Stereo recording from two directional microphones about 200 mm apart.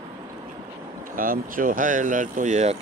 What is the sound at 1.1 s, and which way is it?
Speech, 45° right (ahead or behind).